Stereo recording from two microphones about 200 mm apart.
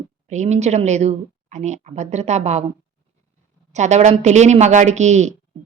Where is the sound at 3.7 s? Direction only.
35° right (ahead or behind).